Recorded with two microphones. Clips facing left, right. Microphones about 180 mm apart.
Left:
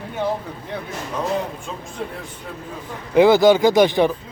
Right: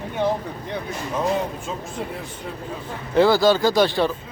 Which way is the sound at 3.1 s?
15° left (ahead or behind).